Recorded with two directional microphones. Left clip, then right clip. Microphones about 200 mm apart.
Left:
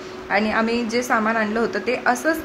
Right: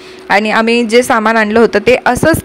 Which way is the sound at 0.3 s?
45° right (ahead or behind).